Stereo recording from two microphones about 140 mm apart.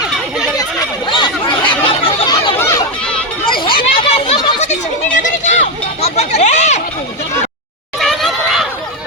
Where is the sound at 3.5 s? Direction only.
35° left (ahead or behind).